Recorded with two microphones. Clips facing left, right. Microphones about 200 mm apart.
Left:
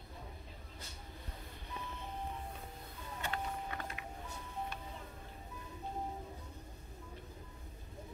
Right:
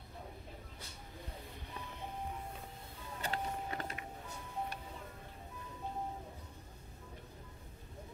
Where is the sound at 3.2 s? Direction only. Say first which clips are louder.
Right 1 dB; 35° right (ahead or behind).